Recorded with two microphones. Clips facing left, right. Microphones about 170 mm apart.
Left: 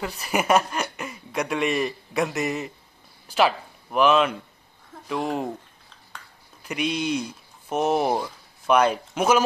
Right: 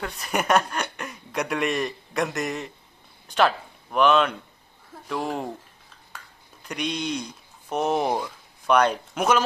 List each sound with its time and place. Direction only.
0.0 s speech: 5° left (ahead or behind)
6.7 s speech: 5° left (ahead or behind)